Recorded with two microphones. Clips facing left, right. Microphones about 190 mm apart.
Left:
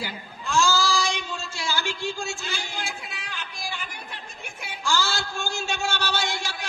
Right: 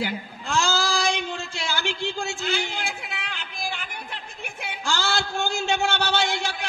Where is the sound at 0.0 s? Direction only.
60° right (ahead or behind).